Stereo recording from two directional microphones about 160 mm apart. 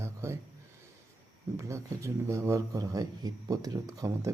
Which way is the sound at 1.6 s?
20° right (ahead or behind).